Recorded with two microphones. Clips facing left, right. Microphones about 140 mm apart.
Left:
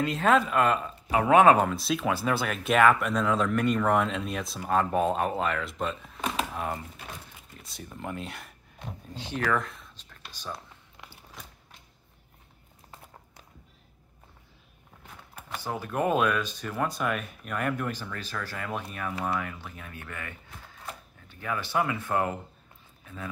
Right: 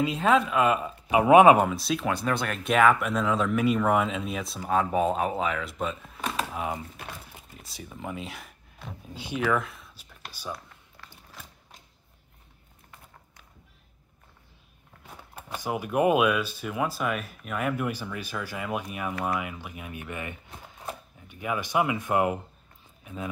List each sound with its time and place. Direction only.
0.0 s speech: centre (ahead or behind)
15.4 s speech: 15° right (ahead or behind)